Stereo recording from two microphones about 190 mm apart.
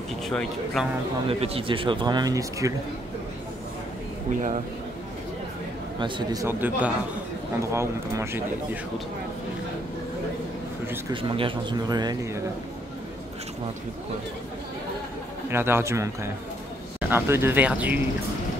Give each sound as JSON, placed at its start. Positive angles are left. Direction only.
{"t": 0.3, "sound": "speech", "side_deg": 0}
{"t": 1.2, "sound": "speech", "side_deg": -30}
{"t": 4.3, "sound": "speech", "side_deg": -40}
{"t": 5.9, "sound": "speech", "side_deg": -25}
{"t": 6.4, "sound": "speech", "side_deg": -10}
{"t": 11.1, "sound": "speech", "side_deg": -25}
{"t": 15.5, "sound": "speech", "side_deg": -10}